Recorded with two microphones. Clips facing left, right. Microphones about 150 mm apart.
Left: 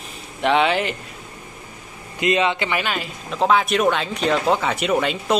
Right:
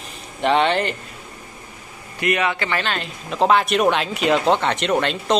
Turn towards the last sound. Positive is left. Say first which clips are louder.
# even
turn(degrees=5)  # may be behind; listen again after turning